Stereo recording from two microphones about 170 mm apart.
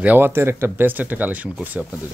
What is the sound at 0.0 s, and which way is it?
Speech, 10° right (ahead or behind).